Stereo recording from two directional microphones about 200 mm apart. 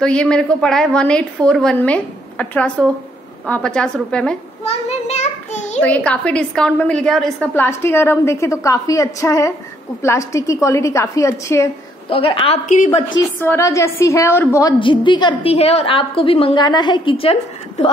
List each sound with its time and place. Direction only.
0.0 s a woman's voice: 5° left (ahead or behind)
4.6 s a sound: 30° left (ahead or behind)
5.8 s a woman's voice: 5° left (ahead or behind)
12.1 s a woman's voice: 25° left (ahead or behind)
13.4 s a woman's voice: 15° left (ahead or behind)